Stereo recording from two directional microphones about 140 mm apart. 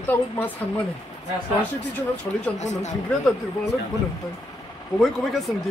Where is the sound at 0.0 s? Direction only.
15° left (ahead or behind).